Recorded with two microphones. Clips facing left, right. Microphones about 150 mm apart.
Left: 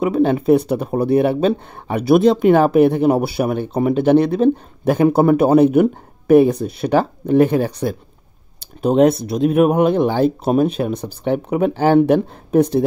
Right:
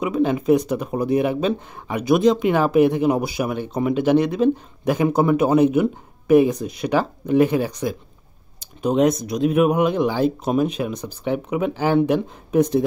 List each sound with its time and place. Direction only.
0.0 s speech: 35° left (ahead or behind)
5.2 s a man's voice: 45° left (ahead or behind)